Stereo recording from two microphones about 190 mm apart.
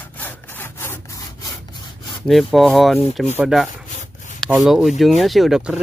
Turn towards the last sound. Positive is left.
turn(degrees=-5)  # may be behind; listen again after turning